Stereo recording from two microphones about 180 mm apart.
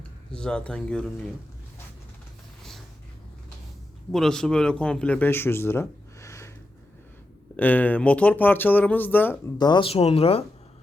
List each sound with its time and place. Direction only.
0.3 s speech: 5° left (ahead or behind)
4.1 s a man's voice: 5° left (ahead or behind)
7.5 s speech: 10° left (ahead or behind)
9.6 s speech: 25° left (ahead or behind)